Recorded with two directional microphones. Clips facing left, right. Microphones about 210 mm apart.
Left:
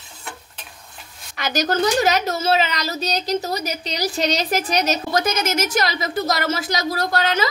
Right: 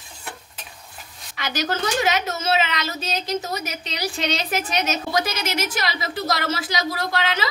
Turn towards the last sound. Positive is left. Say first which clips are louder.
# left 4 dB
turn(degrees=45)  # may be behind; listen again after turning